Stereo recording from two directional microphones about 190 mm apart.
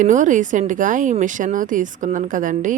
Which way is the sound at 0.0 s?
40° right (ahead or behind).